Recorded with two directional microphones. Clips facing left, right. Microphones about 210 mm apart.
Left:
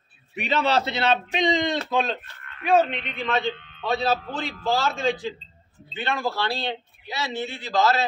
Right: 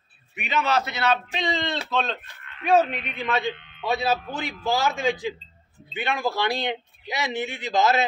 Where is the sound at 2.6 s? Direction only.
Centre (ahead or behind).